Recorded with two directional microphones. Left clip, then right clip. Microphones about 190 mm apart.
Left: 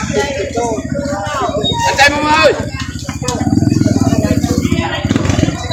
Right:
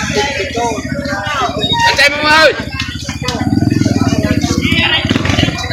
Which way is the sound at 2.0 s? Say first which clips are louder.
Even; 45° left (ahead or behind).